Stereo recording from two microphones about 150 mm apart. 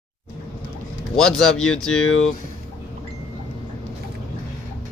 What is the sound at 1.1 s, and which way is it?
Speech, 5° left (ahead or behind).